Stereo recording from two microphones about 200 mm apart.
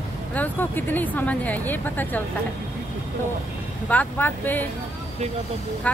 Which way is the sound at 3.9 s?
10° left (ahead or behind).